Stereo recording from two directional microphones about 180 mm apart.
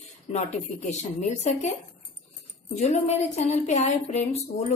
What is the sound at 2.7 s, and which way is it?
A woman's voice, 35° left (ahead or behind).